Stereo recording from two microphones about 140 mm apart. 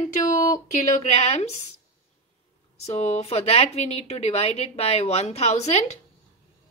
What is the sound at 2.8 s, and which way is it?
Speech, 55° left (ahead or behind).